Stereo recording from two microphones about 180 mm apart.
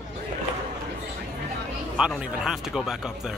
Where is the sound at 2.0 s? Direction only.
5° right (ahead or behind).